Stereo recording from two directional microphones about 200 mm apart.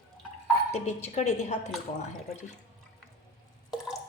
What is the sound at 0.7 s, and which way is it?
Speech, 35° left (ahead or behind).